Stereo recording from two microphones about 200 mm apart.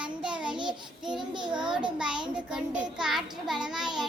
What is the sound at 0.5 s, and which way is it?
Child singing, 25° right (ahead or behind).